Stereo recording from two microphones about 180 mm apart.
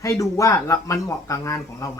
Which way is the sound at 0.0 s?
15° left (ahead or behind).